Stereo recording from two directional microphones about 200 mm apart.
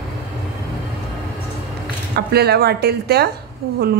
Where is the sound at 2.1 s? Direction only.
55° right (ahead or behind).